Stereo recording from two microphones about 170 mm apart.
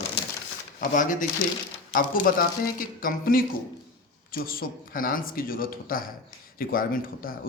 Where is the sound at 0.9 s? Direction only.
50° left (ahead or behind).